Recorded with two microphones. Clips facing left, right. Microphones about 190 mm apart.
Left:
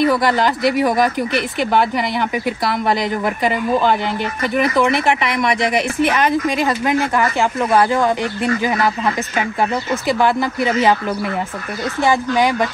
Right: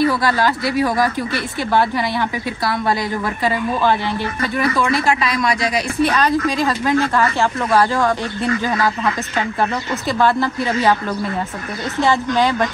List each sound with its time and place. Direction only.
0.0 s speech: 20° left (ahead or behind)
12.0 s speech: 15° left (ahead or behind)